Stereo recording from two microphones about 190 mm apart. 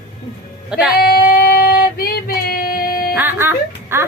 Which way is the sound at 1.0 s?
55° left (ahead or behind).